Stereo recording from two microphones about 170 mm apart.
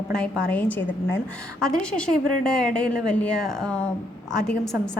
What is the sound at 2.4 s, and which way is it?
Speech, 5° left (ahead or behind).